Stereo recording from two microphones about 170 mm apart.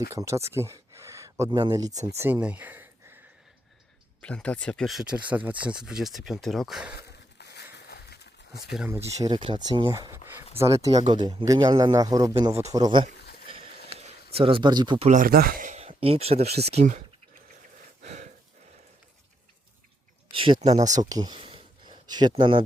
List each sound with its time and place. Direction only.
0.1 s speech: 15° right (ahead or behind)
4.2 s speech: 5° left (ahead or behind)
7.3 s a sound: 80° left
9.2 s speech: 25° right (ahead or behind)
14.0 s speech: 35° right (ahead or behind)
15.0 s speech: 50° right (ahead or behind)
18.0 s breathing: 45° right (ahead or behind)
20.3 s speech: 30° right (ahead or behind)